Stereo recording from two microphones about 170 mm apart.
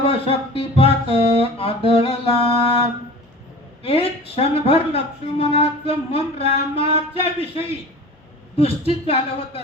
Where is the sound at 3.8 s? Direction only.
35° left (ahead or behind).